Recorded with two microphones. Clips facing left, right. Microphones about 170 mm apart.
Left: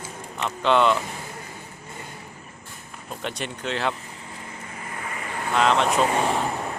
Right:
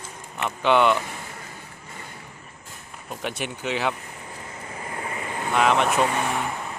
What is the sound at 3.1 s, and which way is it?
Speech, 5° right (ahead or behind).